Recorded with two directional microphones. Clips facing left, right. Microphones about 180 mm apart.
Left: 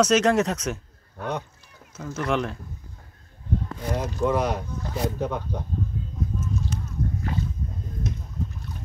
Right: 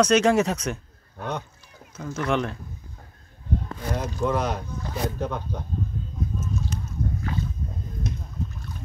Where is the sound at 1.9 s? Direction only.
5° left (ahead or behind).